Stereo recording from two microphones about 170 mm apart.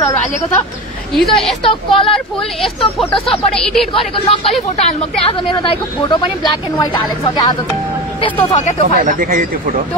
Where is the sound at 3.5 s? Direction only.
5° left (ahead or behind).